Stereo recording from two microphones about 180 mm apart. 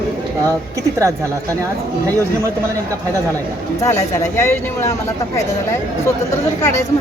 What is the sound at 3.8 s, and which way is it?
Speech, 15° left (ahead or behind).